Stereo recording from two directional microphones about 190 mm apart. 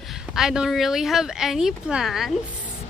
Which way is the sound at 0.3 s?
5° right (ahead or behind).